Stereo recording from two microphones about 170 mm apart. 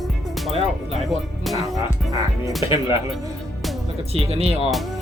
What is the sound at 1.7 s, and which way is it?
Speech, 20° right (ahead or behind).